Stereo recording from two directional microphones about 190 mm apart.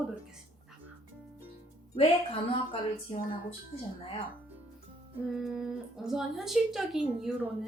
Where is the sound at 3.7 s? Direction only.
30° left (ahead or behind).